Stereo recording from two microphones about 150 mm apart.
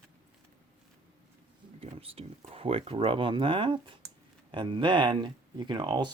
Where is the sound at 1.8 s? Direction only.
40° right (ahead or behind).